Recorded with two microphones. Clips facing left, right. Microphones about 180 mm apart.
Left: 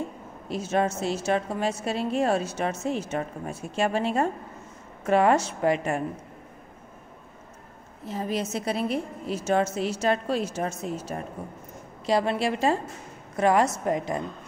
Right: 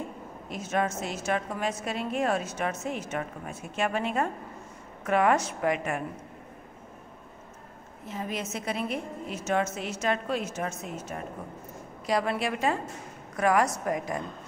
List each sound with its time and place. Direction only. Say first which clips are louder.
0.5 s a woman's voice: left 4 dB; 30° left (ahead or behind)
8.1 s a woman's voice: left 5 dB; 35° left (ahead or behind)